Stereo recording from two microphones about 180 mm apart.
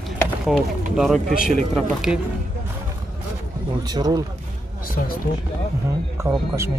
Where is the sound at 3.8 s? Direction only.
20° right (ahead or behind).